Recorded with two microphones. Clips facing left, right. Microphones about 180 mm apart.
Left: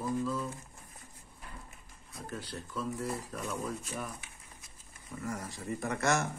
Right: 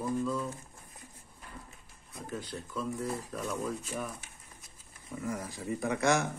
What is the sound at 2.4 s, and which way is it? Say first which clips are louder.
Speech: right 1 dB; 5° left (ahead or behind).